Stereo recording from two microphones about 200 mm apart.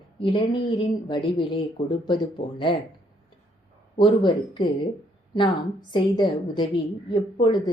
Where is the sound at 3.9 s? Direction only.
25° left (ahead or behind).